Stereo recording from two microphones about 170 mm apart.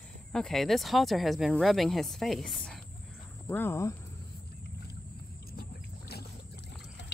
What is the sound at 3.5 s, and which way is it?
Speech, 15° left (ahead or behind).